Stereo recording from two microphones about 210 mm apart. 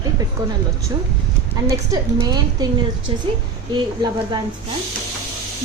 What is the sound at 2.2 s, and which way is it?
Speech, 20° right (ahead or behind).